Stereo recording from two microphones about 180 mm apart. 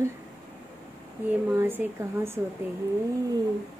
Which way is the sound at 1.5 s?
10° right (ahead or behind).